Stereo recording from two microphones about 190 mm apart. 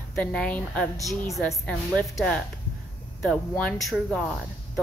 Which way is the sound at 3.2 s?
5° left (ahead or behind).